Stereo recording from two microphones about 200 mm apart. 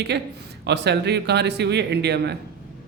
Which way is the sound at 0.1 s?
60° right (ahead or behind).